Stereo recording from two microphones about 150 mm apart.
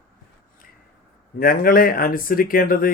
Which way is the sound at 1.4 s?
80° left.